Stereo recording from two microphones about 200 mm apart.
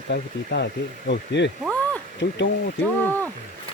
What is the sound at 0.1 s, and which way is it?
Speech, 55° left (ahead or behind).